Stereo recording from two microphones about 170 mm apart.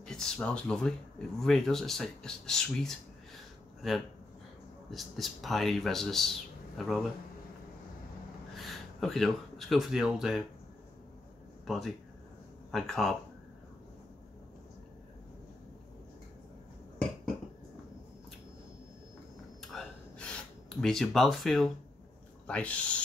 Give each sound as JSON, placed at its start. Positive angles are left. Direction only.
{"t": 0.0, "sound": "speech", "side_deg": 5}
{"t": 8.5, "sound": "speech", "side_deg": 0}
{"t": 11.6, "sound": "speech", "side_deg": 0}
{"t": 19.7, "sound": "a sound", "side_deg": 5}
{"t": 20.8, "sound": "speech", "side_deg": 0}